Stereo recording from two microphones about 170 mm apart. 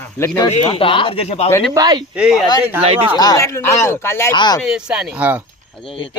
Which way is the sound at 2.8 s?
35° right (ahead or behind).